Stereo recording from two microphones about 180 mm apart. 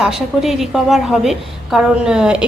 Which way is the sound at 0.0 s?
Centre (ahead or behind).